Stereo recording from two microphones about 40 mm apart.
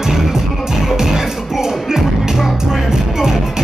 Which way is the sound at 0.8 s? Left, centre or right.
Centre.